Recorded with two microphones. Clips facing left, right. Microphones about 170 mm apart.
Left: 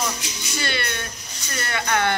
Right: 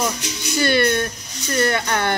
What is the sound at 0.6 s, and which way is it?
Speech, 45° right (ahead or behind).